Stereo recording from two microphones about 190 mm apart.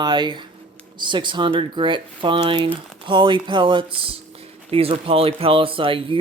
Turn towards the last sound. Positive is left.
turn(degrees=-30)  # may be behind; listen again after turning